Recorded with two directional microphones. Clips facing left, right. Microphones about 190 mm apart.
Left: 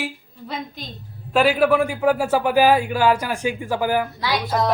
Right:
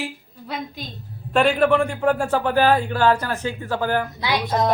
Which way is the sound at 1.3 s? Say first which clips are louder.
Even; 5° left (ahead or behind).